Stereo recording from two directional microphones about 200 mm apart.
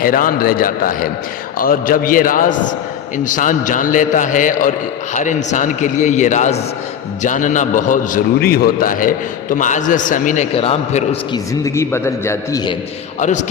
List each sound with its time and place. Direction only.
0.0 s a man's voice: 45° left (ahead or behind)
11.6 s a man's voice: 15° left (ahead or behind)
13.1 s a man's voice: 35° left (ahead or behind)